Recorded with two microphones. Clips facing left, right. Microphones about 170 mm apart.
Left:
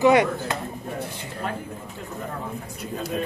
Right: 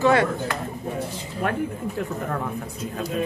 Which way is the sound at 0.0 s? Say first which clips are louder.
Left 2 dB; 15° left (ahead or behind).